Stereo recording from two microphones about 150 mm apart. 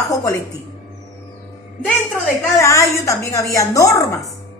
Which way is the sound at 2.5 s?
20° left (ahead or behind).